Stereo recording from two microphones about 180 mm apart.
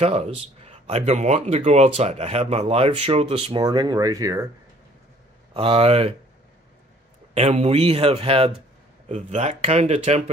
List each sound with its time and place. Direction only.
0.0 s speech: 35° right (ahead or behind); by 4.5 s 20° right (ahead or behind)
5.5 s speech: 30° right (ahead or behind)
7.3 s speech: 35° right (ahead or behind)